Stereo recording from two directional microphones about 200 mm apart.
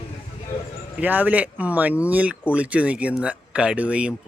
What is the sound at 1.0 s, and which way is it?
Speech, 10° right (ahead or behind).